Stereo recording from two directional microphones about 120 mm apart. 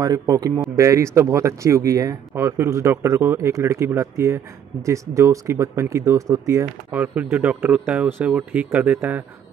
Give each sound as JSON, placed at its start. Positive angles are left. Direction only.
{"t": 0.0, "sound": "speech", "side_deg": -30}
{"t": 6.9, "sound": "speech", "side_deg": -15}